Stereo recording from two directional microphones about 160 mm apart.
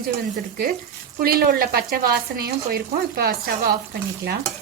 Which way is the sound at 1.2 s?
70° right (ahead or behind).